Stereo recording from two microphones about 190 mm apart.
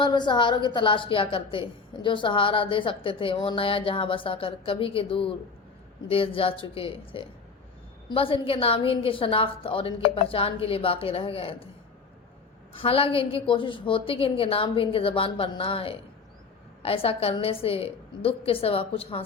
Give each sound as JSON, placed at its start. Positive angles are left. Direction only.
{"t": 0.0, "sound": "a woman's voice", "side_deg": 25}
{"t": 12.7, "sound": "a woman's voice", "side_deg": 30}